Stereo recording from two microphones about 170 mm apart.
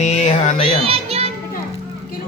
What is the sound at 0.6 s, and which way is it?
Child singing, 35° right (ahead or behind).